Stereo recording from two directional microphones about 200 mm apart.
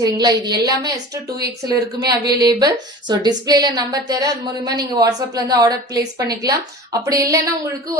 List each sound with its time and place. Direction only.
0.0 s a woman's voice: 20° right (ahead or behind)